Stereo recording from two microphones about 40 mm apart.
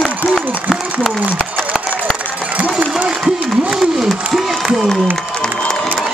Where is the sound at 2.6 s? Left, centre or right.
Right.